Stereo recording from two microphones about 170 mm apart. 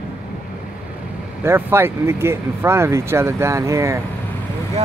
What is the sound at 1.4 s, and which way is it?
Speech, 15° right (ahead or behind).